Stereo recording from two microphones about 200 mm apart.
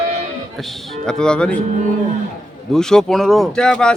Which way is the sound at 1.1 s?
5° left (ahead or behind).